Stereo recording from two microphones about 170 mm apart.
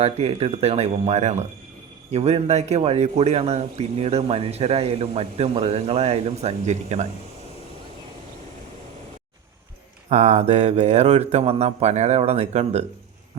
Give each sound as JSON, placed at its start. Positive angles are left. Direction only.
{"t": 0.0, "sound": "a man's voice", "side_deg": -35}
{"t": 10.1, "sound": "a man's voice", "side_deg": -40}